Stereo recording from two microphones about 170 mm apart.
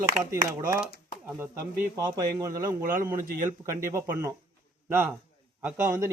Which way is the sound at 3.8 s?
15° right (ahead or behind).